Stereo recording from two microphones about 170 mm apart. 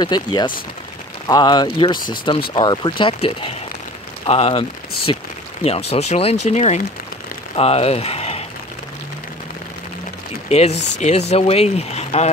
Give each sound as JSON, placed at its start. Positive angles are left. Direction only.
{"t": 0.0, "sound": "speech", "side_deg": 25}
{"t": 10.5, "sound": "speech", "side_deg": 40}